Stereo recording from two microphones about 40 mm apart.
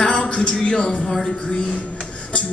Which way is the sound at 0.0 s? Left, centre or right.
Centre.